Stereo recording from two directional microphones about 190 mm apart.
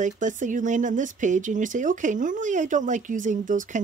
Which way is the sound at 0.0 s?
40° right (ahead or behind).